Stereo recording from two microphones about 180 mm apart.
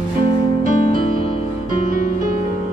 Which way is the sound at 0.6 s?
50° right (ahead or behind).